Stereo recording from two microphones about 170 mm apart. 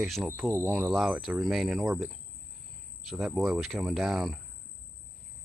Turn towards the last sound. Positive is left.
turn(degrees=0)  # may be behind; listen again after turning